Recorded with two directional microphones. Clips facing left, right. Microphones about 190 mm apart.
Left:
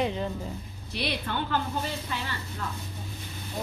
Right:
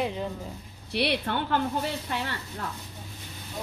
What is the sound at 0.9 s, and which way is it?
Speech, 65° right (ahead or behind).